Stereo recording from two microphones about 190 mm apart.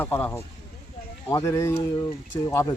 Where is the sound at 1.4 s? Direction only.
15° left (ahead or behind).